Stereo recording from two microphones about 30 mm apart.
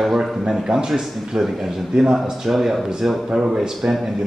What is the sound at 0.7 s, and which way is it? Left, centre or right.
A man's voice, centre.